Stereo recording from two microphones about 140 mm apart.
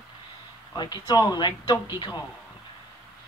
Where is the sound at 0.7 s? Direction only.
30° left (ahead or behind).